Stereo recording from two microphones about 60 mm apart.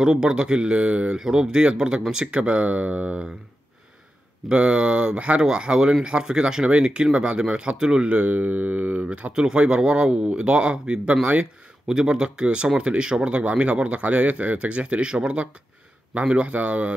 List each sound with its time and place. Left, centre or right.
0.0 s speech: centre
4.5 s speech: centre
9.3 s speech: centre